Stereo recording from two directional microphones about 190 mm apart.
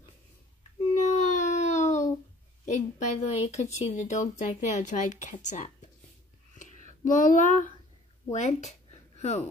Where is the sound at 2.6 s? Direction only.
40° left (ahead or behind).